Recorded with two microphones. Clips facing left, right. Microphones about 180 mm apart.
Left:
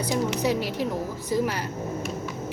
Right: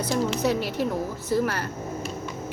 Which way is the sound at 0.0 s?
10° left (ahead or behind).